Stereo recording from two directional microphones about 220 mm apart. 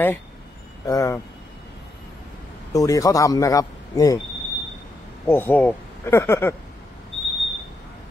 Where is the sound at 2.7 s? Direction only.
15° left (ahead or behind).